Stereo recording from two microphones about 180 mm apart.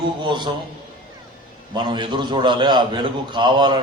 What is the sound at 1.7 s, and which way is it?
A man's voice, 25° right (ahead or behind).